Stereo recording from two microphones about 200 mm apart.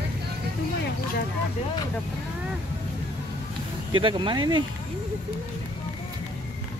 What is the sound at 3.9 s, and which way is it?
Speech, 25° right (ahead or behind).